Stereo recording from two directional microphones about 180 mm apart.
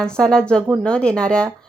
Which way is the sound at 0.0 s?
5° left (ahead or behind).